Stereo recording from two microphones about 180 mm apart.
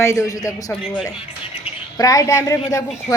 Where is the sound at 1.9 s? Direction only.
20° left (ahead or behind).